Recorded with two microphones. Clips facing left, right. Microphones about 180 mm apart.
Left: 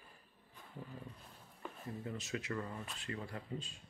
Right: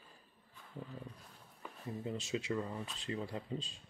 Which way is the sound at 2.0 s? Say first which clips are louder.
Right 4 dB; 25° right (ahead or behind).